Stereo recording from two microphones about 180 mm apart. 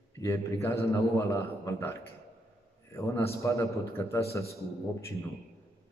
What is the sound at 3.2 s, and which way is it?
A man's voice, 15° left (ahead or behind).